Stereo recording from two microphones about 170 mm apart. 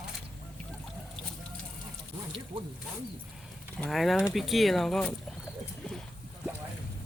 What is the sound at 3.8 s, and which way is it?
Speech, centre (ahead or behind).